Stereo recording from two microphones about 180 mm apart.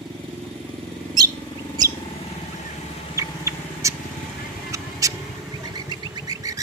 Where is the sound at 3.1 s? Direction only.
15° right (ahead or behind).